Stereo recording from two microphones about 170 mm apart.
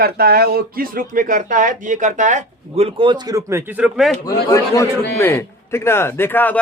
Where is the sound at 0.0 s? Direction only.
65° right (ahead or behind); by 3.6 s 20° right (ahead or behind).